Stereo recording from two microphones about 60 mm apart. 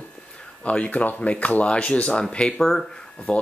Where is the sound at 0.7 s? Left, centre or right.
Left; by 2.8 s centre.